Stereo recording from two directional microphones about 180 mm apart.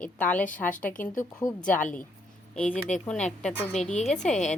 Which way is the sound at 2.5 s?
5° left (ahead or behind).